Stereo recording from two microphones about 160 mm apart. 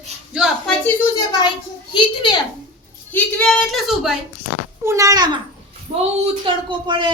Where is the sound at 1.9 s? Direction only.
30° left (ahead or behind).